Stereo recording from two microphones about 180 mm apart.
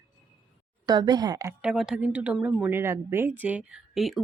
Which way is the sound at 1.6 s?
5° right (ahead or behind).